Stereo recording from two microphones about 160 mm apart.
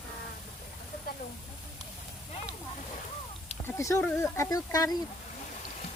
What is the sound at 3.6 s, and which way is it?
Speech, 15° left (ahead or behind).